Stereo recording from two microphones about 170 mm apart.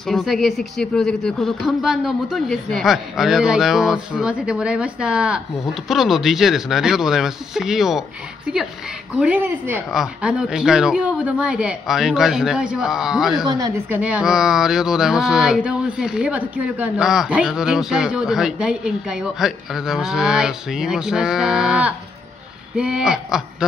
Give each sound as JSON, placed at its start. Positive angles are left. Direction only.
{"t": 0.0, "sound": "speech", "side_deg": 0}
{"t": 9.2, "sound": "a woman's voice", "side_deg": -10}